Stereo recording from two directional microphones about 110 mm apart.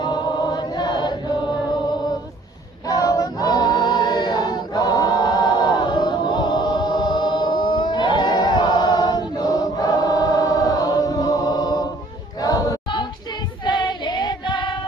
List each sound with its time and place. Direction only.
0.0 s chant: 40° left (ahead or behind)
2.8 s a capella: 35° left (ahead or behind)
12.4 s choir: 35° left (ahead or behind)
13.7 s female singing: 45° left (ahead or behind)